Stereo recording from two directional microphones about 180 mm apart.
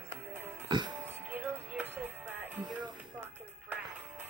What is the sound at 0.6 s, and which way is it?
Music, 25° right (ahead or behind).